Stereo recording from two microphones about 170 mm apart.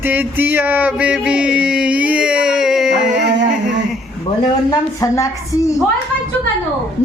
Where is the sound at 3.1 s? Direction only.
85° right.